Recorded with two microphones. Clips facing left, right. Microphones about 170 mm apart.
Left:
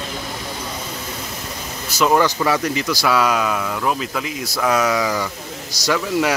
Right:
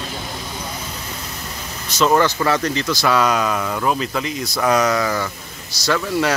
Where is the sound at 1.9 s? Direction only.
10° left (ahead or behind).